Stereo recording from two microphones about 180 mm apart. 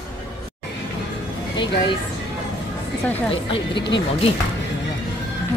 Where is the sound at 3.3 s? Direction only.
30° left (ahead or behind).